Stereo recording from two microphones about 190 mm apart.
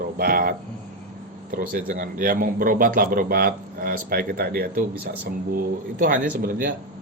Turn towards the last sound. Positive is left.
turn(degrees=-45)  # may be behind; listen again after turning